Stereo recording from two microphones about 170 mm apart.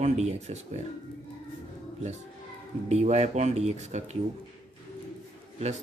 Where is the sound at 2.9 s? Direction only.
40° right (ahead or behind).